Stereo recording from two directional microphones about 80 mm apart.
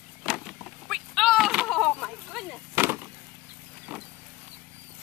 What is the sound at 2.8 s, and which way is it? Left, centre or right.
Chop, right.